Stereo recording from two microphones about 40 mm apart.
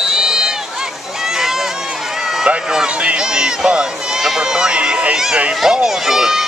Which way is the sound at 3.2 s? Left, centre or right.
Centre.